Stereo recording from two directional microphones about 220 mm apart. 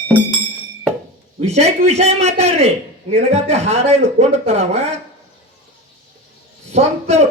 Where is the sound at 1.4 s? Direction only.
30° right (ahead or behind).